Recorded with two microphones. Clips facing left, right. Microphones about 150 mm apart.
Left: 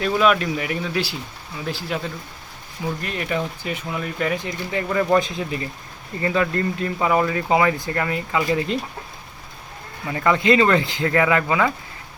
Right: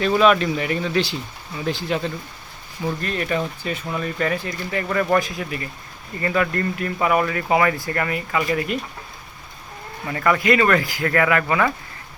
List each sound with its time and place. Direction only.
0.0 s speech: 5° left (ahead or behind)
3.0 s speech: 15° left (ahead or behind)
10.1 s speech: 20° left (ahead or behind)